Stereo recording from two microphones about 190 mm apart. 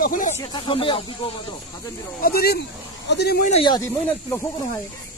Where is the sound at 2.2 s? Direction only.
55° left (ahead or behind).